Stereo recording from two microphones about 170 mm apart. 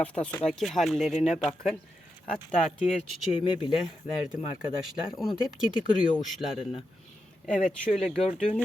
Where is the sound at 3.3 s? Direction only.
30° left (ahead or behind).